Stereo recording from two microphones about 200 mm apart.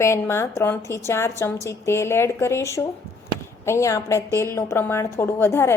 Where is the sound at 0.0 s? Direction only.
15° left (ahead or behind).